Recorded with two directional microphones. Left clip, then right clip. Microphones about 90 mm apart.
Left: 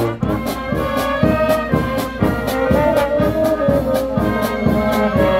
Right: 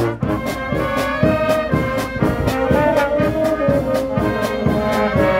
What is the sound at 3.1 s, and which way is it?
Music, 5° right (ahead or behind).